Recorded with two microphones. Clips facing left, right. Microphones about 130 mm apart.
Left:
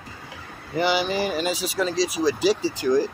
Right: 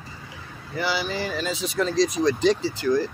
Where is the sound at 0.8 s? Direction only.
15° left (ahead or behind).